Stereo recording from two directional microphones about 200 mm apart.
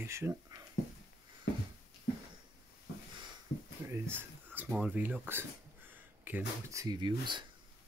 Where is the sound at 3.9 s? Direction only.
10° right (ahead or behind).